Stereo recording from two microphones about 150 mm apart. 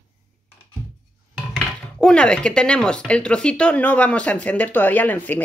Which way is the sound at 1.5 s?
5° left (ahead or behind).